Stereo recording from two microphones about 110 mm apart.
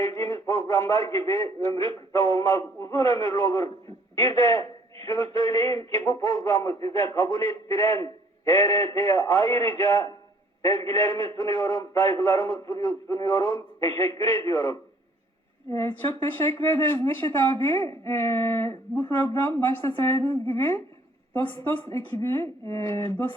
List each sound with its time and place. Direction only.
0.0 s a man's voice: 30° left (ahead or behind)
7.3 s a man's voice: 55° right (ahead or behind)
7.7 s a man's voice: 30° left (ahead or behind)
15.7 s a man's voice: 20° left (ahead or behind)